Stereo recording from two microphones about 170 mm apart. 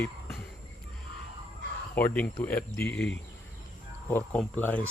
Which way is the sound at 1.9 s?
10° left (ahead or behind).